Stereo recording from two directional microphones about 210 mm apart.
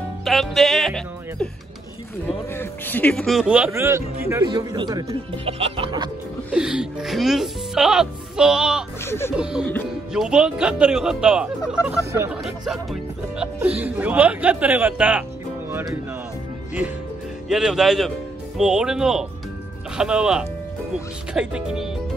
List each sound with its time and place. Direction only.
0.2 s speech: centre (ahead or behind); by 6.0 s 25° right (ahead or behind)
6.5 s speech: 5° right (ahead or behind)
9.0 s speech: 10° left (ahead or behind)
9.4 s speech: 5° right (ahead or behind)
17.5 s speech: centre (ahead or behind)